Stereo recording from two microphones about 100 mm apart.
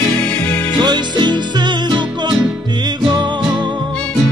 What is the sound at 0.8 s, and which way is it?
Music, 45° right (ahead or behind).